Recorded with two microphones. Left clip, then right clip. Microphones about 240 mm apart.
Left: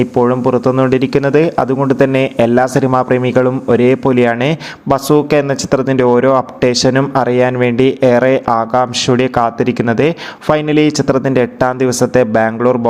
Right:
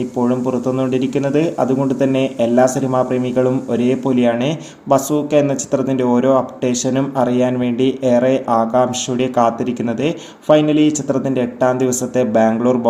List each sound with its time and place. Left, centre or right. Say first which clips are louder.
0.0 s speech: left 6 dB; left